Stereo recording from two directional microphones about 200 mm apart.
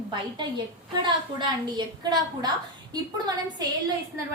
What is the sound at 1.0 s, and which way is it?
A woman's voice, 25° right (ahead or behind).